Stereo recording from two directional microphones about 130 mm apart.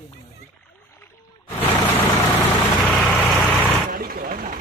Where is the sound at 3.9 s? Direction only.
90° right.